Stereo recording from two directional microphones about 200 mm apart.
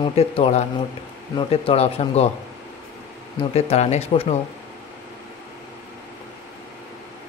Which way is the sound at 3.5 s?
30° left (ahead or behind).